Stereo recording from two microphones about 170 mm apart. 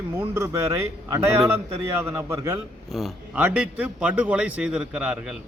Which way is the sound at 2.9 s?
Centre (ahead or behind).